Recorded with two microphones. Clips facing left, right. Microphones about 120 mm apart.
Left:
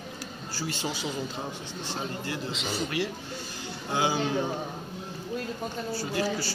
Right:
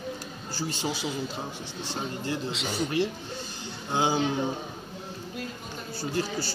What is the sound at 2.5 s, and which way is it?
Speech, centre (ahead or behind).